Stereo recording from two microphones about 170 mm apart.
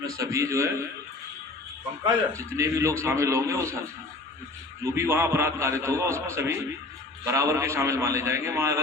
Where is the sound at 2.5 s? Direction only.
15° right (ahead or behind).